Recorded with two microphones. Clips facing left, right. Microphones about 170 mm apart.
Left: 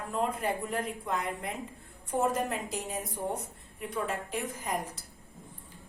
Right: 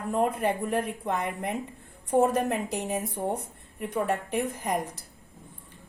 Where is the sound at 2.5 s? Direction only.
65° right (ahead or behind).